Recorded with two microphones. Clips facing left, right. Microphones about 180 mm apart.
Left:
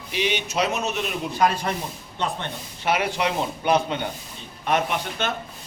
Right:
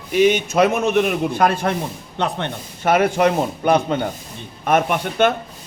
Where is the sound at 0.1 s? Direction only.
45° right (ahead or behind).